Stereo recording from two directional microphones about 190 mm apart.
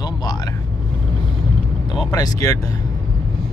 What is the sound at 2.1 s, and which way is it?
Speech, 20° left (ahead or behind).